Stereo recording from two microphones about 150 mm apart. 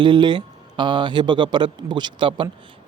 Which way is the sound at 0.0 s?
30° right (ahead or behind).